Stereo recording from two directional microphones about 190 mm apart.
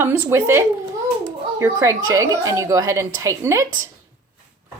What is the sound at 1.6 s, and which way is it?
A woman's voice, 15° right (ahead or behind).